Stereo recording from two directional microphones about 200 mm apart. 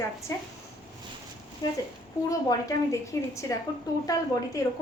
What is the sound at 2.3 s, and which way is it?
A woman's voice, 15° left (ahead or behind).